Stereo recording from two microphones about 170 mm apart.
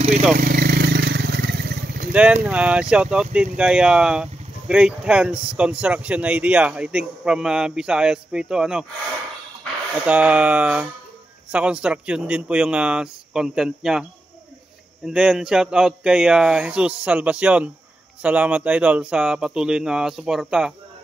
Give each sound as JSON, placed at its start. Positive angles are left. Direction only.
{"t": 0.4, "sound": "wild animals", "side_deg": -60}
{"t": 2.1, "sound": "speech", "side_deg": -5}
{"t": 9.9, "sound": "speech", "side_deg": -10}
{"t": 15.0, "sound": "speech", "side_deg": -5}